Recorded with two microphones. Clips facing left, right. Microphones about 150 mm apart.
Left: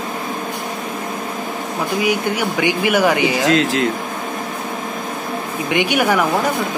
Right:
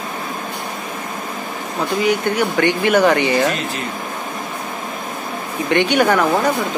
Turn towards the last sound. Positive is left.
turn(degrees=10)  # may be behind; listen again after turning